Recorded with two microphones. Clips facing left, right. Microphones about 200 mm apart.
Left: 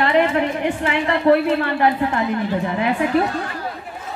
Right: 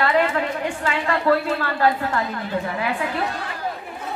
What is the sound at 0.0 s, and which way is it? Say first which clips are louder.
A woman's voice: left 3 dB; 20° left (ahead or behind).